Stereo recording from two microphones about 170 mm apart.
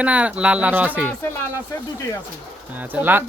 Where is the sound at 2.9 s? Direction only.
10° right (ahead or behind).